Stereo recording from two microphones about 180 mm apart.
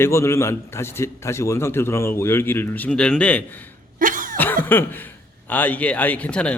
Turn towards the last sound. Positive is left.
turn(degrees=5)  # may be behind; listen again after turning